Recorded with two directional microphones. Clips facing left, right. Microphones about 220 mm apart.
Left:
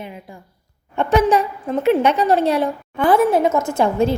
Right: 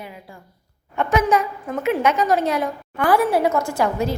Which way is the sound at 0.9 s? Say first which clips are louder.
Left 3 dB; 30° left (ahead or behind).